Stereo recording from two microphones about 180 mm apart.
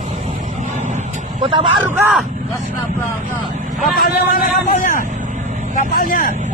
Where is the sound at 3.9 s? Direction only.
55° left (ahead or behind).